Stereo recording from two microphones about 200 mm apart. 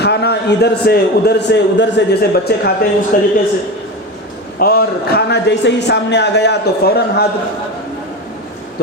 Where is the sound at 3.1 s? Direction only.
45° left (ahead or behind).